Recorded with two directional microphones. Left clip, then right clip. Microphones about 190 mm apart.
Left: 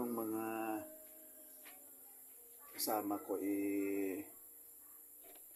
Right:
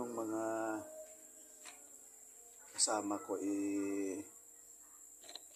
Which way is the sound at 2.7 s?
10° left (ahead or behind).